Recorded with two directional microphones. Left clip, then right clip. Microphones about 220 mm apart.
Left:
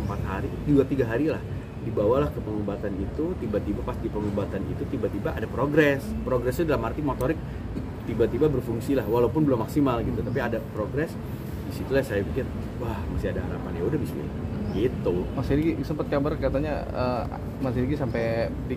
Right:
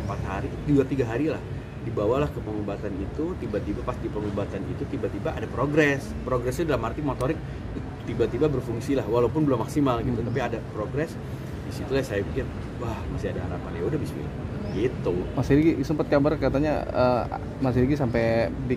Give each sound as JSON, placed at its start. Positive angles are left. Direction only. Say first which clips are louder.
{"t": 0.3, "sound": "speech", "louder": "left 1 dB", "side_deg": -5}
{"t": 5.2, "sound": "speech", "louder": "even", "side_deg": 0}
{"t": 11.9, "sound": "speech", "louder": "left 1 dB", "side_deg": -5}
{"t": 15.1, "sound": "speech", "louder": "left 1 dB", "side_deg": 0}
{"t": 15.4, "sound": "speech", "louder": "right 6 dB", "side_deg": -45}